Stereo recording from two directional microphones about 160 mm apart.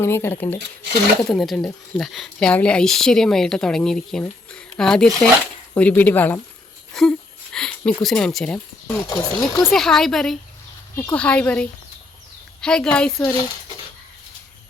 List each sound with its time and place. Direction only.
0.0 s speech: 15° left (ahead or behind)
1.2 s speech: centre (ahead or behind)
6.9 s a sound: centre (ahead or behind)
7.5 s speech: 5° left (ahead or behind)
9.0 s speech: 25° left (ahead or behind)
9.6 s speech: centre (ahead or behind)
10.9 s speech: 15° left (ahead or behind)